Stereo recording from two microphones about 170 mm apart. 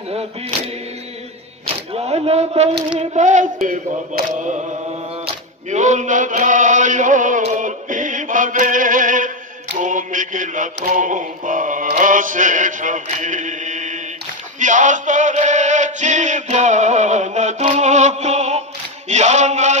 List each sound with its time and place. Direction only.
2.0 s speech: 35° right (ahead or behind)
3.0 s mantra: 45° right (ahead or behind)
5.2 s chant: 45° right (ahead or behind)
9.8 s mantra: 50° right (ahead or behind)
14.6 s male singing: 45° right (ahead or behind)
19.0 s mantra: 45° right (ahead or behind)